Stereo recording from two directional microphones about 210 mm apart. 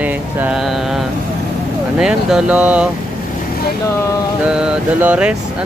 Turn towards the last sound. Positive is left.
turn(degrees=-5)  # may be behind; listen again after turning